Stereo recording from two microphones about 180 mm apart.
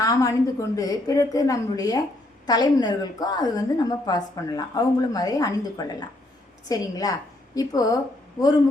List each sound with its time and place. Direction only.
0.0 s a woman's voice: 20° left (ahead or behind)